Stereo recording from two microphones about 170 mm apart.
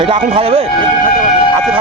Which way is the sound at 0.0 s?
35° right (ahead or behind).